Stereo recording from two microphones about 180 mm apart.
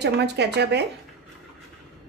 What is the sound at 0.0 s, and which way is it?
Speech, 70° right (ahead or behind).